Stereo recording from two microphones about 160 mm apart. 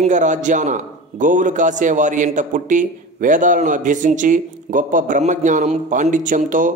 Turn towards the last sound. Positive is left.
turn(degrees=-55)  # may be behind; listen again after turning